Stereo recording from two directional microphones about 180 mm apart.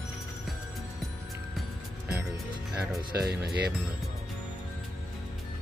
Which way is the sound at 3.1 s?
65° right (ahead or behind).